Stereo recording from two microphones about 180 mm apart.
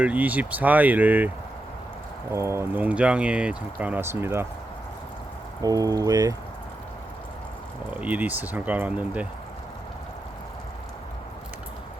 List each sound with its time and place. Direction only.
0.0 s speech: 10° right (ahead or behind)
2.3 s speech: 15° right (ahead or behind)
5.6 s speech: 20° right (ahead or behind)
8.0 s speech: 10° right (ahead or behind)